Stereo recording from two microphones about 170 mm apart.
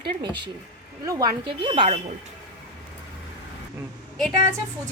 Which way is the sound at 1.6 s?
30° right (ahead or behind).